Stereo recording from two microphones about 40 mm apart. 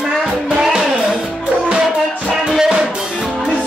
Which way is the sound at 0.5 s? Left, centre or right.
Centre.